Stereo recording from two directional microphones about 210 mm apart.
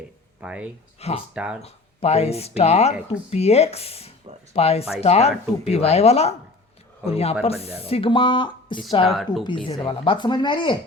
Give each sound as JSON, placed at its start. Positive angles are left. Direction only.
{"t": 0.4, "sound": "speech", "side_deg": -5}
{"t": 0.9, "sound": "speech", "side_deg": 30}
{"t": 1.3, "sound": "speech", "side_deg": -5}
{"t": 1.6, "sound": "speech", "side_deg": 30}
{"t": 9.0, "sound": "speech", "side_deg": 0}
{"t": 9.4, "sound": "speech", "side_deg": 25}